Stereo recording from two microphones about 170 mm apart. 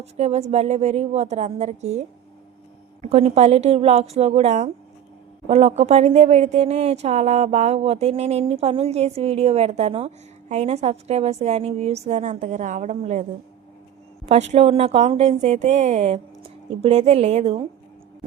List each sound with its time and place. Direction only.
0.0 s speech: 40° right (ahead or behind)
14.3 s speech: 40° right (ahead or behind)